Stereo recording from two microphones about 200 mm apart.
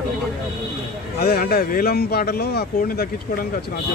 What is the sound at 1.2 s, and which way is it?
Speech, 50° left (ahead or behind).